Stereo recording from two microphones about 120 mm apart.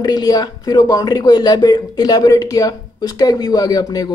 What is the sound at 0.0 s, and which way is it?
Speech, 35° left (ahead or behind).